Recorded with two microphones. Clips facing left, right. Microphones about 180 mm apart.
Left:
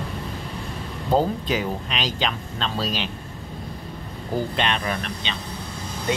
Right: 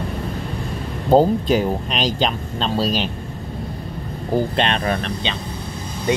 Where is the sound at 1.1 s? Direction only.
40° right (ahead or behind).